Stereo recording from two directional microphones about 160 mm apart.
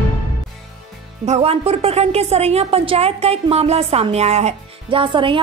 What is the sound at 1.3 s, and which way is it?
A woman's voice, 40° right (ahead or behind).